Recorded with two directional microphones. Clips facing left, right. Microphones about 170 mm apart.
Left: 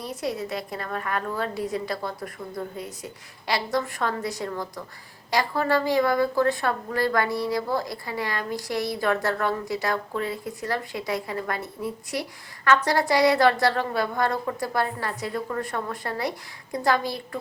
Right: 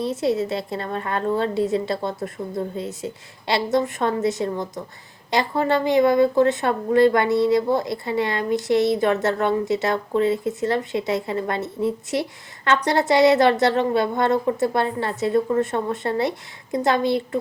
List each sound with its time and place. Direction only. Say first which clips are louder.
0.0 s speech: right 8 dB; 25° right (ahead or behind)